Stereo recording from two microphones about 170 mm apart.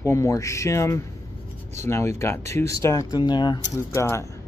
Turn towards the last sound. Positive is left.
turn(degrees=15)  # may be behind; listen again after turning